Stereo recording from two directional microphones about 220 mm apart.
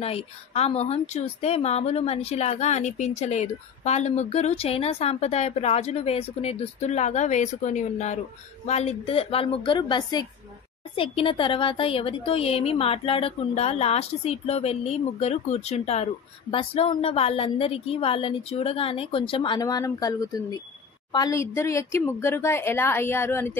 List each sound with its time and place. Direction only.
0.0 s a woman's voice: 30° left (ahead or behind); by 23.5 s 10° left (ahead or behind)